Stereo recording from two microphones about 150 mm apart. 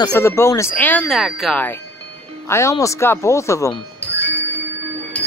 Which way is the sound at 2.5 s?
20° left (ahead or behind).